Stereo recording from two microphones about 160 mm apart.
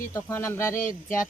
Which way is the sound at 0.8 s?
55° left (ahead or behind).